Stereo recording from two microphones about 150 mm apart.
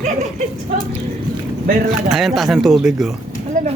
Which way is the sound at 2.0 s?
Centre (ahead or behind).